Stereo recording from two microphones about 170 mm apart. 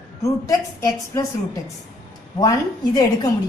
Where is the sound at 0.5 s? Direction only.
20° left (ahead or behind).